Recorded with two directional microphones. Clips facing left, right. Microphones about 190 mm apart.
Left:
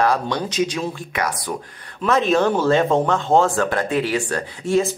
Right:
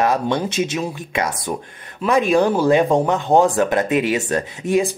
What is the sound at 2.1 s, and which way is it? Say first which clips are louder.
Speech: right 2 dB; 15° right (ahead or behind).